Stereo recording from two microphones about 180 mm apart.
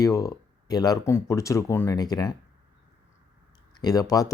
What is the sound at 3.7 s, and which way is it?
Speech, 20° left (ahead or behind).